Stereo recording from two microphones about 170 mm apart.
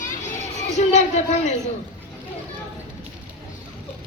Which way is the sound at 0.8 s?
40° left (ahead or behind).